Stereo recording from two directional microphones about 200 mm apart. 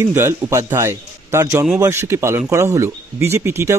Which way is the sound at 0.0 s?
10° right (ahead or behind).